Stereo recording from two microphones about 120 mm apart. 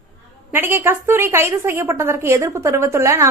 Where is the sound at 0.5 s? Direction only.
20° right (ahead or behind).